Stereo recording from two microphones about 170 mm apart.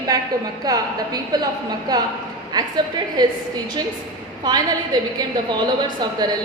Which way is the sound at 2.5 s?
25° right (ahead or behind).